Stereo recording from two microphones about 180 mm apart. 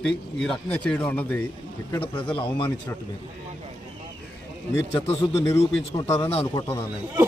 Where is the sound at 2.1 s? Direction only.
25° left (ahead or behind).